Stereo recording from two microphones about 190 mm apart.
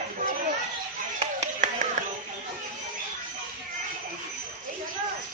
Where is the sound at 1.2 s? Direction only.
35° right (ahead or behind).